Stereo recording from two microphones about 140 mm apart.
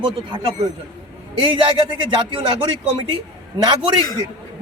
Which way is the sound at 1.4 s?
40° right (ahead or behind).